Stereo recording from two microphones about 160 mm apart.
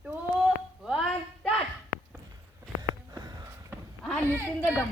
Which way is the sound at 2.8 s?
25° right (ahead or behind).